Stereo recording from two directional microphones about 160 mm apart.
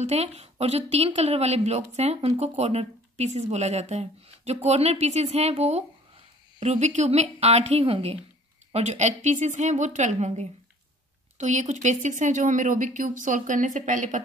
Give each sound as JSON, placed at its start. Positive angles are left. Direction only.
{"t": 0.0, "sound": "a woman's voice", "side_deg": -45}